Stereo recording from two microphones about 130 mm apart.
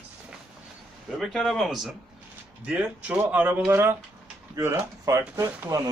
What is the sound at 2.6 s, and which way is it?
Speech, 10° right (ahead or behind).